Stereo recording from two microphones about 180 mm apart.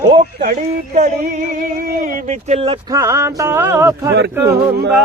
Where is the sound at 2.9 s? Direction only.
15° right (ahead or behind).